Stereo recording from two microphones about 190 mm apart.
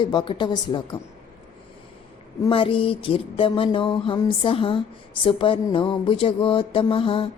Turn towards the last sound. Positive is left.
turn(degrees=30)  # may be behind; listen again after turning